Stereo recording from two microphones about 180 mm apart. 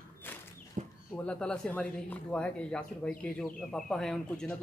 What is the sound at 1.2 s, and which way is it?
Speech, 5° left (ahead or behind).